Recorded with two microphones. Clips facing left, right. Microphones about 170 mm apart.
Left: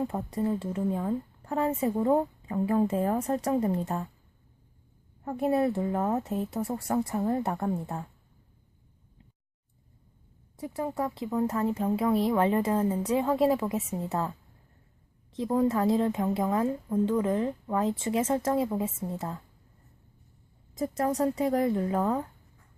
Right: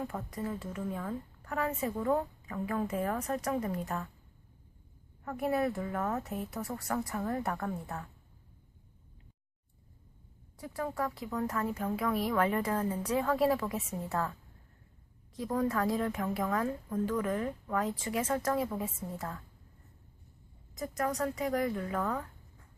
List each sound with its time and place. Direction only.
0.0 s a woman's voice: 25° left (ahead or behind)
5.2 s a woman's voice: 25° left (ahead or behind)
10.6 s a woman's voice: 20° left (ahead or behind)
20.7 s a woman's voice: 30° left (ahead or behind)